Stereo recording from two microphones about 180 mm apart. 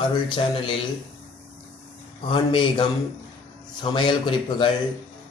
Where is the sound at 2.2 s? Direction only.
30° left (ahead or behind).